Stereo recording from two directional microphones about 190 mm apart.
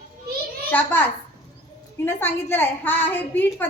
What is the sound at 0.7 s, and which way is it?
A woman's voice, 10° left (ahead or behind).